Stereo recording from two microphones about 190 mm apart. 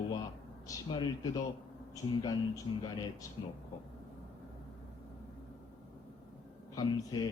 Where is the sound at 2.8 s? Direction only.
20° left (ahead or behind).